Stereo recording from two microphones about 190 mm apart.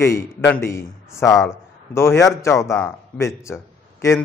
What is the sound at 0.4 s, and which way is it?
A man's voice, 10° left (ahead or behind).